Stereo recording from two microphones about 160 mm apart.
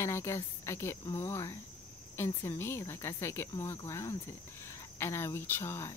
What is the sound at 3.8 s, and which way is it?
Cricket, 20° left (ahead or behind).